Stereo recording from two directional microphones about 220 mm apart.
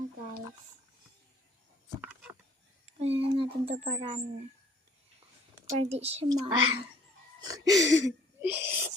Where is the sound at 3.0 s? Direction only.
25° right (ahead or behind).